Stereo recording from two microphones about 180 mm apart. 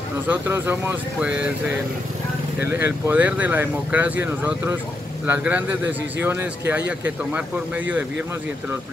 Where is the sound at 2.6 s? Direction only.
10° right (ahead or behind).